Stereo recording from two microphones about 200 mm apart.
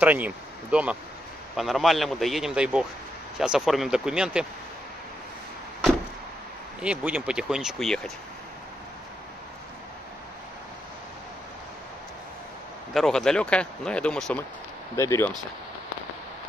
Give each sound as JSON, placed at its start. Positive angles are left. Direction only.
{"t": 0.0, "sound": "speech", "side_deg": -10}
{"t": 6.8, "sound": "speech", "side_deg": -5}
{"t": 12.9, "sound": "speech", "side_deg": 0}
{"t": 15.0, "sound": "speech", "side_deg": 15}